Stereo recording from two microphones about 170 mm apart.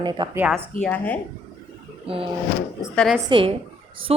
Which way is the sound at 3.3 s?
30° right (ahead or behind).